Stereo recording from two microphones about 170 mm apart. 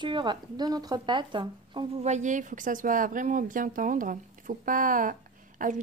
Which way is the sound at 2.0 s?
45° right (ahead or behind).